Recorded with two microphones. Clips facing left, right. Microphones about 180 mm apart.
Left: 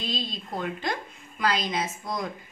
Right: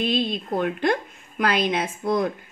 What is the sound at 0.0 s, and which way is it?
A woman's voice, 60° right (ahead or behind).